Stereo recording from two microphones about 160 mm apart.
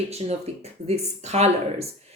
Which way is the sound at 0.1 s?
40° right (ahead or behind).